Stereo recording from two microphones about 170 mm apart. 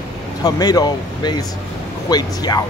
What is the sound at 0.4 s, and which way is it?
Speech, 25° left (ahead or behind).